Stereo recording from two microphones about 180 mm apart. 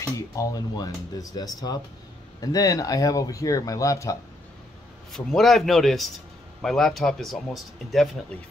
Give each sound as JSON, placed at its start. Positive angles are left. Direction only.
{"t": 0.0, "sound": "speech", "side_deg": 20}
{"t": 5.1, "sound": "speech", "side_deg": 0}